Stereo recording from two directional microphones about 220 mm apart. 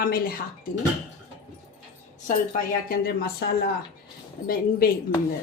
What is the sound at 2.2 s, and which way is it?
Speech, 35° left (ahead or behind).